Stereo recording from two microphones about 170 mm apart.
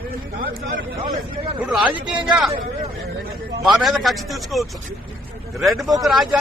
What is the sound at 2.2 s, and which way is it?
Speech, 25° right (ahead or behind).